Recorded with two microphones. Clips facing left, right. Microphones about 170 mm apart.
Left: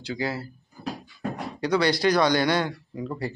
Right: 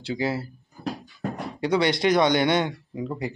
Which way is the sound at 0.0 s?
25° right (ahead or behind).